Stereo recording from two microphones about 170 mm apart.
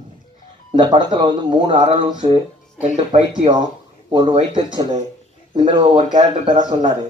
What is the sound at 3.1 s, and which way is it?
Speech, 45° right (ahead or behind).